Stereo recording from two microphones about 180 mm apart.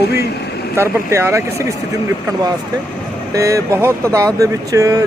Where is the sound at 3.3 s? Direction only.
15° right (ahead or behind).